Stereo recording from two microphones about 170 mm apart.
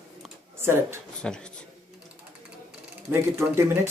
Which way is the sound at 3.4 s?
15° right (ahead or behind).